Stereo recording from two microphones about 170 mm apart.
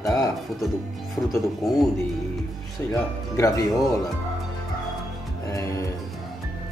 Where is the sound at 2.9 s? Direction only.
20° left (ahead or behind).